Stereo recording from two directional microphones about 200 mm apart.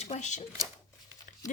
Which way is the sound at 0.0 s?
35° left (ahead or behind).